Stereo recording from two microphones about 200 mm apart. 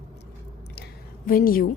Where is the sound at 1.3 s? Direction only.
45° left (ahead or behind).